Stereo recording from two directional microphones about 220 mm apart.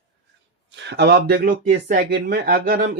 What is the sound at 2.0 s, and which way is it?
Speech, 45° right (ahead or behind).